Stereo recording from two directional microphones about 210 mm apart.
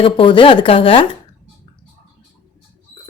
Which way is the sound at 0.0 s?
25° left (ahead or behind).